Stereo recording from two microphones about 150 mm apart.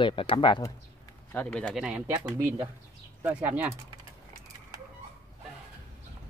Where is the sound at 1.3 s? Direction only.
10° left (ahead or behind).